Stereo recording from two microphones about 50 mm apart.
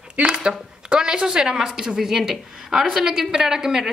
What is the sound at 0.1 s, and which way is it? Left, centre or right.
Speech, right.